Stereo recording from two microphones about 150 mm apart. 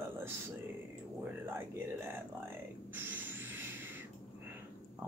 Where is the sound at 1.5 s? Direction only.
15° right (ahead or behind).